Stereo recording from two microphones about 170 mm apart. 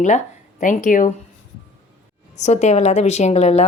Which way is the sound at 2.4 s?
40° left (ahead or behind).